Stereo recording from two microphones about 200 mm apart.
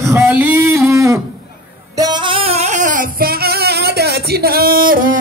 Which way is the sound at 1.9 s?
20° right (ahead or behind).